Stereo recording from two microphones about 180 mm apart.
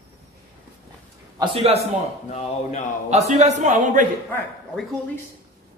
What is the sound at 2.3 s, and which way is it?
Speech, 40° left (ahead or behind).